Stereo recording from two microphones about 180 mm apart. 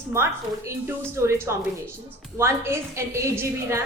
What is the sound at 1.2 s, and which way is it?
Speech, 15° right (ahead or behind).